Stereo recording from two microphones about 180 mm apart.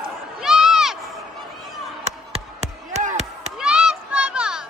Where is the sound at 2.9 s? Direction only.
45° right (ahead or behind).